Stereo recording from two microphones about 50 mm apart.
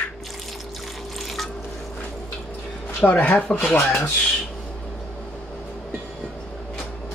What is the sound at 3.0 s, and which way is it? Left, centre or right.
Speech, left.